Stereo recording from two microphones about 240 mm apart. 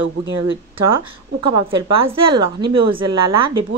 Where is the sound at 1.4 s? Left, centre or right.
Centre.